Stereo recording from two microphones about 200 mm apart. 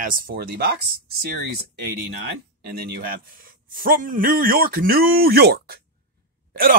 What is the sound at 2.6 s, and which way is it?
Speech, 50° right (ahead or behind).